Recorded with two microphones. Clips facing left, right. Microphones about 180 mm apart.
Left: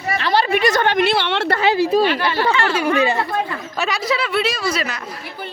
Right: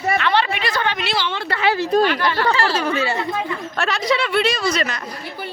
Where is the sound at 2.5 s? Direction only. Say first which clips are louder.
Even; 35° right (ahead or behind).